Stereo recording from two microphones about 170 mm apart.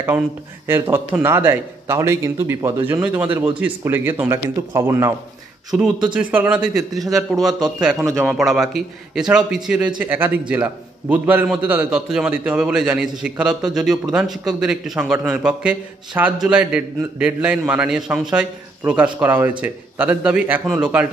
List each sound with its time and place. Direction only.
0.7 s a man's voice: 15° right (ahead or behind)
6.1 s a man's voice: 10° right (ahead or behind)
8.0 s a man's voice: 15° right (ahead or behind)
8.3 s a man's voice: centre (ahead or behind)